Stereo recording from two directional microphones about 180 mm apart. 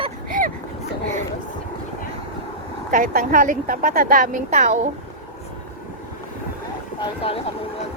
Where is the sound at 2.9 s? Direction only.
50° right (ahead or behind).